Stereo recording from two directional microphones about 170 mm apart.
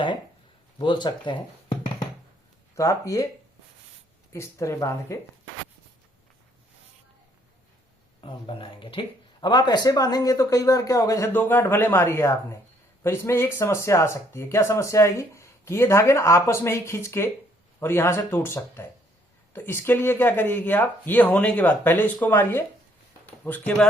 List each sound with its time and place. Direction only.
0.8 s speech: 25° left (ahead or behind)
2.7 s speech: 20° left (ahead or behind)
4.3 s speech: 15° left (ahead or behind)
8.2 s speech: 30° left (ahead or behind); by 23.8 s 10° left (ahead or behind)